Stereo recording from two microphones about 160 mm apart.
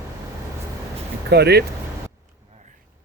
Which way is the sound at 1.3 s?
90° right.